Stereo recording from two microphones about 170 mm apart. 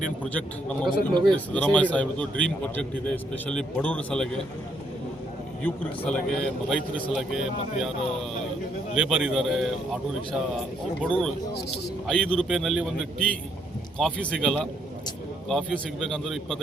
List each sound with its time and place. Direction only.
0.2 s a man's voice: 5° left (ahead or behind)
0.9 s a man's voice: 25° right (ahead or behind)
1.5 s a man's voice: 5° left (ahead or behind)
5.6 s a man's voice: 10° left (ahead or behind)
9.0 s a man's voice: centre (ahead or behind)